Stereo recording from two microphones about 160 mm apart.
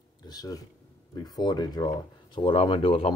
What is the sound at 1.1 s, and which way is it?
Speech, 25° left (ahead or behind).